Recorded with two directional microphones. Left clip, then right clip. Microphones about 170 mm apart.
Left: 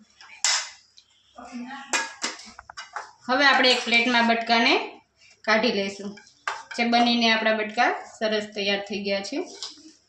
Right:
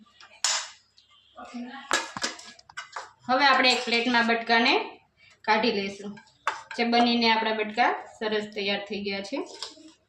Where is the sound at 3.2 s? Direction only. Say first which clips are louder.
Left 2 dB; 30° left (ahead or behind).